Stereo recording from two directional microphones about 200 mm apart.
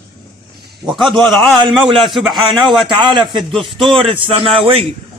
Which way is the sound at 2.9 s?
25° right (ahead or behind).